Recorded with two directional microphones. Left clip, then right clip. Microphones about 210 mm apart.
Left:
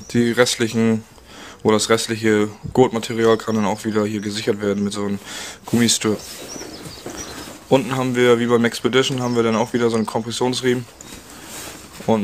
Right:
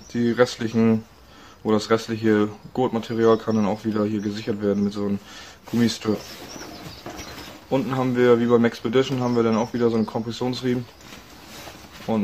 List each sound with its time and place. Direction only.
0.1 s speech: 40° left (ahead or behind)
7.7 s speech: 40° left (ahead or behind)
12.1 s speech: 35° left (ahead or behind)